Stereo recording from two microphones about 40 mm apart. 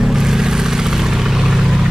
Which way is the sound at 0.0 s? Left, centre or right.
Centre.